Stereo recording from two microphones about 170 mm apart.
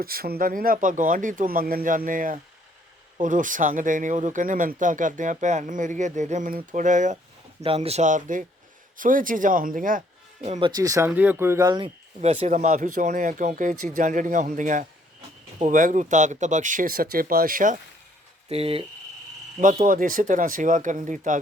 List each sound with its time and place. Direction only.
0.0 s speech: 60° right (ahead or behind)
7.6 s speech: 35° right (ahead or behind); by 10.0 s 55° right (ahead or behind)
10.8 s speech: 20° right (ahead or behind)
11.8 s speech: 40° right (ahead or behind)
18.4 s speech: 35° right (ahead or behind)
19.5 s speech: 50° right (ahead or behind)